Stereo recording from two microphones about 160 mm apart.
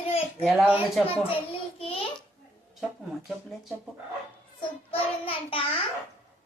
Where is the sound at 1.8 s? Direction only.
35° left (ahead or behind).